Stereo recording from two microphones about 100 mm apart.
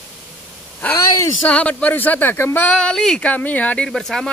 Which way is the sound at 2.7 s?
10° left (ahead or behind).